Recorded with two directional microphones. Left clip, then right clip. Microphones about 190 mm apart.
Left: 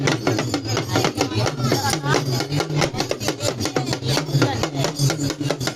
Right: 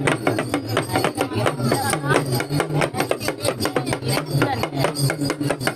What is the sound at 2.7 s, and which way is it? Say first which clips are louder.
Rub: right 1 dB; 30° right (ahead or behind).